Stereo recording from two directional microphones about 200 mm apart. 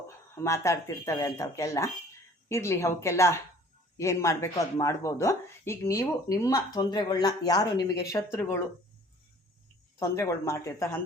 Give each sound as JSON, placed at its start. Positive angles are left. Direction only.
{"t": 0.1, "sound": "speech", "side_deg": 15}
{"t": 10.0, "sound": "speech", "side_deg": 15}